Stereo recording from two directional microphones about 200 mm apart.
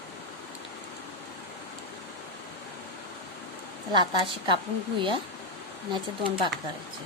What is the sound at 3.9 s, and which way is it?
Speech, 25° right (ahead or behind).